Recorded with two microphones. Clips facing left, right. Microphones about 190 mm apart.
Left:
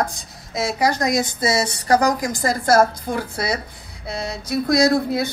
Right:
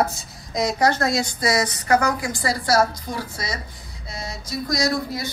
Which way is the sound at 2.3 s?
45° left (ahead or behind).